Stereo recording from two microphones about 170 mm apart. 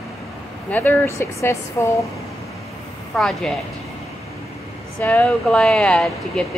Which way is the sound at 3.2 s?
Centre (ahead or behind).